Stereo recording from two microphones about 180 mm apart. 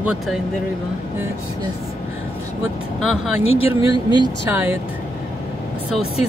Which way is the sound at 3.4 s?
35° left (ahead or behind).